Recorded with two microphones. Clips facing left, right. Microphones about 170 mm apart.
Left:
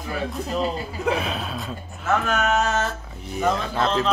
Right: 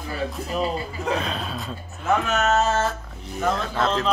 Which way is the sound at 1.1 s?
5° left (ahead or behind).